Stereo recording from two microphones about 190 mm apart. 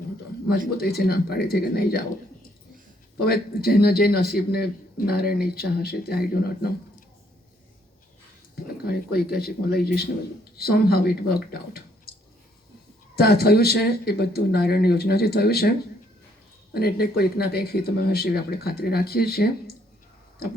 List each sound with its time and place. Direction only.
0.8 s a man's voice: 55° left (ahead or behind)
3.2 s a man's voice: 55° left (ahead or behind)
8.6 s a man's voice: 55° left (ahead or behind)
12.1 s a sound: 55° left (ahead or behind)
13.1 s a man's voice: 55° left (ahead or behind)
16.7 s a man's voice: 55° left (ahead or behind)